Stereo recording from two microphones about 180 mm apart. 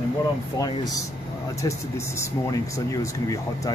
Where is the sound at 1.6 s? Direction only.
15° left (ahead or behind).